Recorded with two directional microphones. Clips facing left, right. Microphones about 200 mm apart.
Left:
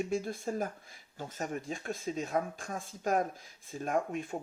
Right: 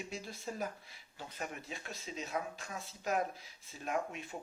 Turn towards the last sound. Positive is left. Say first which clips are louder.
# left 6 dB
turn(degrees=50)  # may be behind; listen again after turning